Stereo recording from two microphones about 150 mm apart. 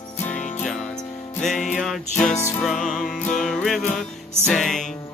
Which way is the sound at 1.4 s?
5° left (ahead or behind).